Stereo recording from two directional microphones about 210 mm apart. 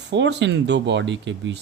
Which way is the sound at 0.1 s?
55° right (ahead or behind).